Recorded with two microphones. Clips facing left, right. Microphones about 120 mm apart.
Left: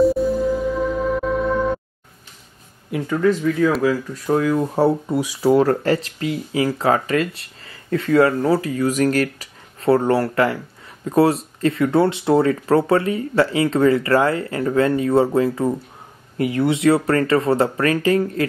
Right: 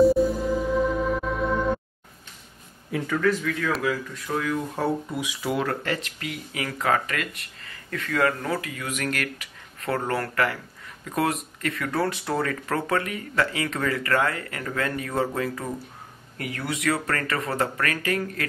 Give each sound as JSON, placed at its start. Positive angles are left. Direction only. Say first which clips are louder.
{"t": 0.0, "sound": "music", "louder": "left 2 dB", "side_deg": 0}
{"t": 2.9, "sound": "speech", "louder": "left 5 dB", "side_deg": 20}
{"t": 3.8, "sound": "speech", "louder": "left 8 dB", "side_deg": 35}